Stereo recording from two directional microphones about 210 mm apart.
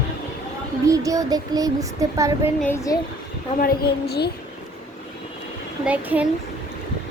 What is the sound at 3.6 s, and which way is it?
Speech, 45° left (ahead or behind).